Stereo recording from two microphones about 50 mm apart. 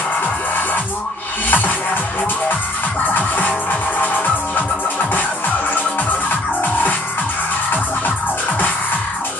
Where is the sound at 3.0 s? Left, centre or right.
Left.